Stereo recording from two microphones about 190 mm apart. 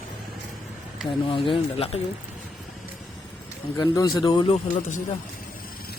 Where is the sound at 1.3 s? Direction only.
30° left (ahead or behind).